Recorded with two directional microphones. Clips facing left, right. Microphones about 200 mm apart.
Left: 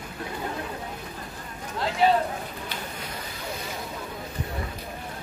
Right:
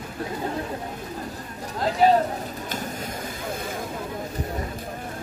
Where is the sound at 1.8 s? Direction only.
40° right (ahead or behind).